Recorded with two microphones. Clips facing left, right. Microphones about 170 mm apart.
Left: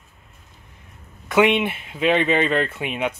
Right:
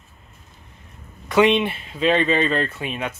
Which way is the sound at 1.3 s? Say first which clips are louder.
Right 1 dB; 10° left (ahead or behind).